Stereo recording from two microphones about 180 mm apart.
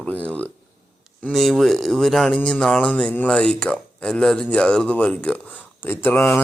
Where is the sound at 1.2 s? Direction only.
Centre (ahead or behind).